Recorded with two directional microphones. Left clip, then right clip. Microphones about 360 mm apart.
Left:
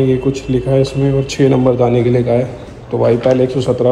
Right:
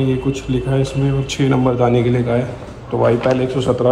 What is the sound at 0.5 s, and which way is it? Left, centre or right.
A man's voice, centre.